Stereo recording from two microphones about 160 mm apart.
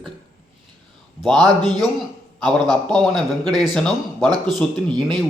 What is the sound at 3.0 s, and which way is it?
A man's voice, centre (ahead or behind).